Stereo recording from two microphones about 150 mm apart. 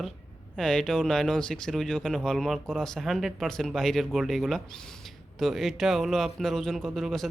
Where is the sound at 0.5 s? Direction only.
5° left (ahead or behind).